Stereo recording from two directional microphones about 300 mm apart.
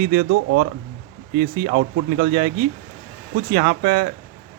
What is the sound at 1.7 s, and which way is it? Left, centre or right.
Speech, right.